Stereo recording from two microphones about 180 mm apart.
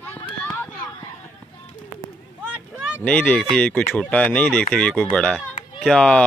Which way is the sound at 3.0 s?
5° left (ahead or behind).